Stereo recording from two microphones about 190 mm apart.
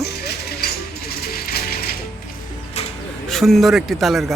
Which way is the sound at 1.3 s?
50° left (ahead or behind).